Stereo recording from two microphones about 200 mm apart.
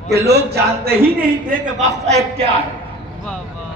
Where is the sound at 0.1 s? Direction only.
55° right (ahead or behind).